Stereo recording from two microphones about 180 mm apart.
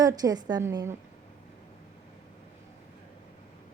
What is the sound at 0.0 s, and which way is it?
Speech, 20° right (ahead or behind).